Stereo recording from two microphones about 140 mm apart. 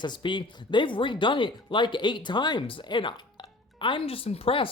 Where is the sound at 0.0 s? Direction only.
35° left (ahead or behind).